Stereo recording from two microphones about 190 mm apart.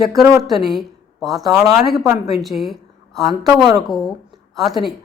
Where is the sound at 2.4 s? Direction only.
Centre (ahead or behind).